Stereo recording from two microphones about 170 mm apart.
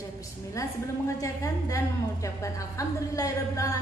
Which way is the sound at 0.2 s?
20° left (ahead or behind).